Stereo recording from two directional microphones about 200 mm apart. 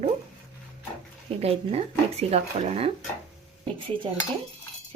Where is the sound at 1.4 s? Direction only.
30° right (ahead or behind).